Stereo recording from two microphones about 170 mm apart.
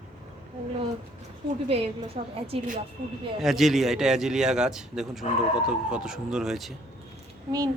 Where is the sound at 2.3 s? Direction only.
35° right (ahead or behind).